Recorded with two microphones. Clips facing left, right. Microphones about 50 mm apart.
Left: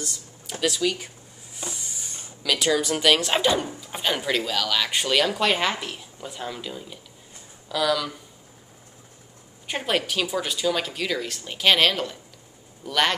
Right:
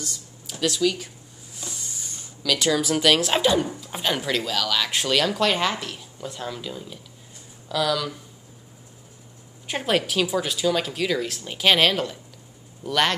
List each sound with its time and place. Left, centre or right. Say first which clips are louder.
0.0 s speech: left 1 dB; centre
9.7 s speech: right 2 dB; centre